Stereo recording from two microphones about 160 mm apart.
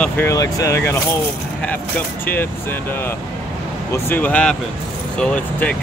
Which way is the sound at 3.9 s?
10° left (ahead or behind).